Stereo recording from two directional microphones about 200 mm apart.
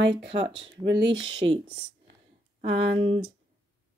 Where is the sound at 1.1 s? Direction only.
25° right (ahead or behind).